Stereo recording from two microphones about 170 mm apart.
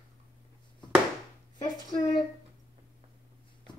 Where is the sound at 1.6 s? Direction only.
25° left (ahead or behind).